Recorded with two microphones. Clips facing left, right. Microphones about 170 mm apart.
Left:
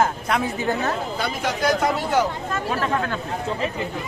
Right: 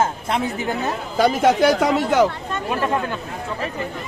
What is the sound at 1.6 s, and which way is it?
Speech, 90° right.